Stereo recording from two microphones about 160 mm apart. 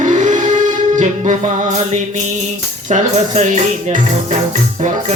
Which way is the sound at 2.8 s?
50° right (ahead or behind).